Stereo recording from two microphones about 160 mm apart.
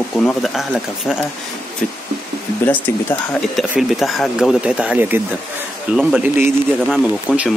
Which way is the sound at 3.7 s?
Centre (ahead or behind).